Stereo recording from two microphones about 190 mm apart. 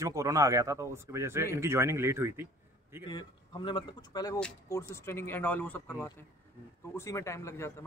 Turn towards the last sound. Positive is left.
turn(degrees=15)  # may be behind; listen again after turning